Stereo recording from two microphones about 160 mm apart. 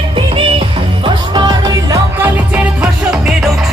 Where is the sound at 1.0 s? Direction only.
25° right (ahead or behind).